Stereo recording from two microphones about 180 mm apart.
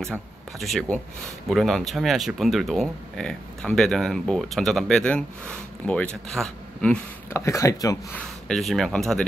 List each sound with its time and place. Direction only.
0.0 s speech: centre (ahead or behind); by 8.2 s 20° left (ahead or behind)
8.5 s speech: centre (ahead or behind)